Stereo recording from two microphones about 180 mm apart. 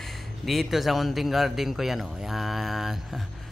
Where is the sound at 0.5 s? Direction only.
Centre (ahead or behind).